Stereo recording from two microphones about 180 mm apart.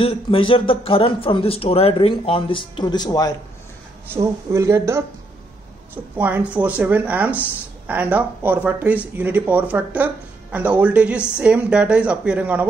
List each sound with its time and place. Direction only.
0.0 s speech: 30° left (ahead or behind)
4.1 s speech: 15° right (ahead or behind)
6.1 s speech: 10° right (ahead or behind)